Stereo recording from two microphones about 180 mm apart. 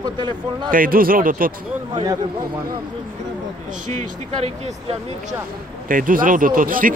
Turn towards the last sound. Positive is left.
turn(degrees=-50)  # may be behind; listen again after turning